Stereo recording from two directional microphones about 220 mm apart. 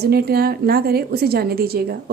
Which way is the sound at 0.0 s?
45° right (ahead or behind).